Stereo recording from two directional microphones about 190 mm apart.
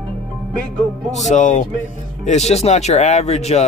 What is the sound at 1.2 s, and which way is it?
Speech, 40° left (ahead or behind).